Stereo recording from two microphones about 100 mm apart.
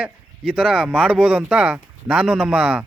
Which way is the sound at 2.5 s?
10° right (ahead or behind).